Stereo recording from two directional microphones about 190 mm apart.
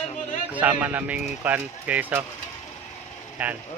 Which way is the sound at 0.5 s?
10° right (ahead or behind).